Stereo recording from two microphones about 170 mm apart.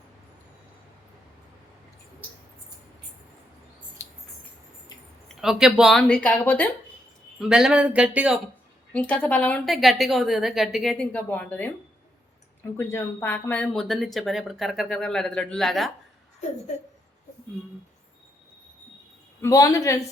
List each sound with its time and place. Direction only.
4.0 s a sound: 15° left (ahead or behind)
5.3 s speech: centre (ahead or behind)
7.3 s speech: 5° right (ahead or behind)
8.9 s speech: 5° left (ahead or behind)
12.7 s speech: 15° left (ahead or behind)
19.4 s a man's voice: 20° left (ahead or behind)